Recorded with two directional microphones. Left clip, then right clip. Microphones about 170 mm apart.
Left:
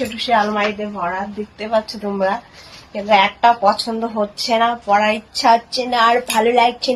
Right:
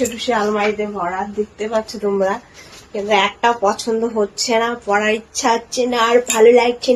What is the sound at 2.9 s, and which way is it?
Speech, 20° right (ahead or behind).